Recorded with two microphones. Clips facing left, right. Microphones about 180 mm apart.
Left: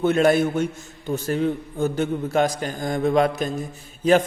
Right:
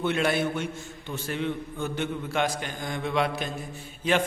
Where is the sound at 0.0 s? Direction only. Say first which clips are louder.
Left 8 dB; 45° left (ahead or behind).